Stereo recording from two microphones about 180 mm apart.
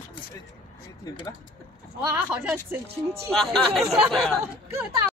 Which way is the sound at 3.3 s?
Centre (ahead or behind).